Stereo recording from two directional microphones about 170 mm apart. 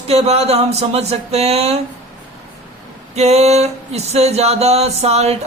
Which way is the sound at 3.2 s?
40° right (ahead or behind).